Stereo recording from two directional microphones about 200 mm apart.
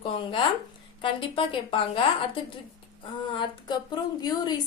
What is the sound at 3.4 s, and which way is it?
Speech, 20° left (ahead or behind).